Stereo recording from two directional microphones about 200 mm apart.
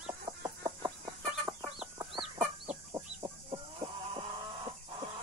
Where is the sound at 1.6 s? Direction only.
5° right (ahead or behind).